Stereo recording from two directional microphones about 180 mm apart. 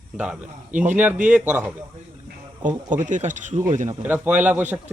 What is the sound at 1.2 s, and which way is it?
Speech, 10° right (ahead or behind).